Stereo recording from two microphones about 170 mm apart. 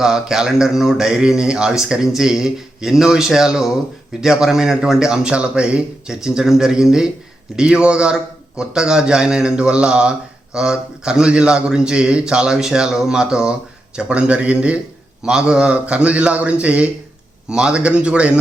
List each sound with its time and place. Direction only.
0.0 s a man's voice: 5° right (ahead or behind)